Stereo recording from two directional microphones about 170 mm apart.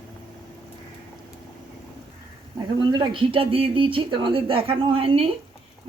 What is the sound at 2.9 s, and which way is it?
Speech, 30° right (ahead or behind).